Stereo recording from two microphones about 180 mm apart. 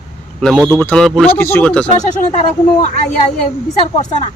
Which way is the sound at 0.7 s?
10° left (ahead or behind).